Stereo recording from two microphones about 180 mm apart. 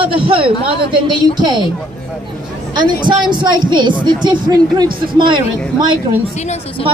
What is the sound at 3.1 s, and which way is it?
A woman's voice, 25° right (ahead or behind).